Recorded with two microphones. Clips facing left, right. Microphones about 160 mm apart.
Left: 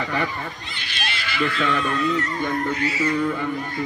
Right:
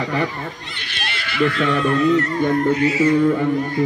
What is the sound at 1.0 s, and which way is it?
Speech, 60° right (ahead or behind).